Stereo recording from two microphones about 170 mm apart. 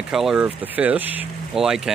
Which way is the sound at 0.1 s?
5° right (ahead or behind).